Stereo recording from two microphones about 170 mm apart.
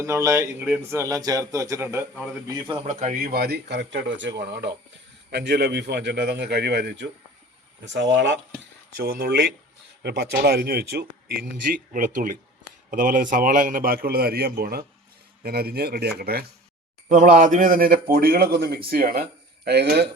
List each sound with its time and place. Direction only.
0.0 s a man's voice: 20° right (ahead or behind)
2.8 s speech: 45° right (ahead or behind); by 4.7 s 90° right
5.3 s speech: 75° right (ahead or behind)
9.0 s speech: 65° right (ahead or behind)
11.7 s a man's voice: 55° right (ahead or behind)
17.1 s a man's voice: 50° right (ahead or behind); by 20.1 s 75° right (ahead or behind)